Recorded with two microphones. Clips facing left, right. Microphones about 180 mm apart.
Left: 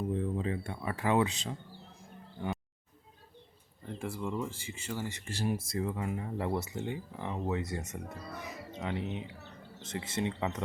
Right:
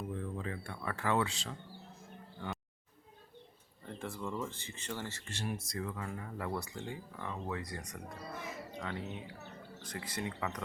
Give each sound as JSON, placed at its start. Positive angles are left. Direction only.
{"t": 0.1, "sound": "speech", "side_deg": 20}
{"t": 2.0, "sound": "bird", "side_deg": 15}
{"t": 3.8, "sound": "speech", "side_deg": 10}
{"t": 5.2, "sound": "speech", "side_deg": 30}